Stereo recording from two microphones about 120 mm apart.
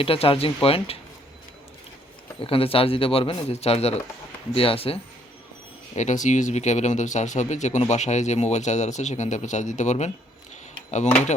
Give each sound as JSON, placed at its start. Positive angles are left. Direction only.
{"t": 0.0, "sound": "speech", "side_deg": 50}
{"t": 2.4, "sound": "speech", "side_deg": 50}
{"t": 5.9, "sound": "speech", "side_deg": 85}